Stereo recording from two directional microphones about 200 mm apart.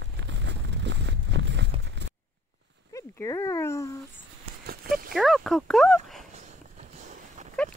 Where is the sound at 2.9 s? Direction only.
15° left (ahead or behind).